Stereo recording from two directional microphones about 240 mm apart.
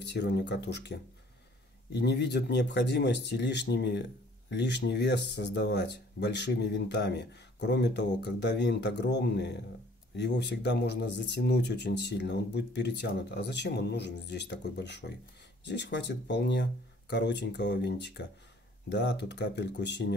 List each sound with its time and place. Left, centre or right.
0.0 s speech: left